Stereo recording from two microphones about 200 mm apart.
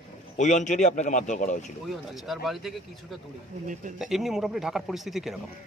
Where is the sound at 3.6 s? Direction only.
40° right (ahead or behind).